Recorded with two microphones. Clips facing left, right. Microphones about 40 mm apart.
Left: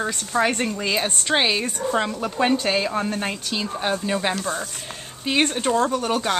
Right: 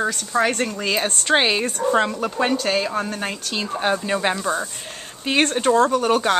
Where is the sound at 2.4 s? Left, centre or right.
Centre.